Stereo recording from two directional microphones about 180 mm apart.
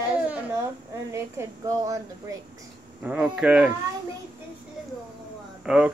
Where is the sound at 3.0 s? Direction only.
5° right (ahead or behind).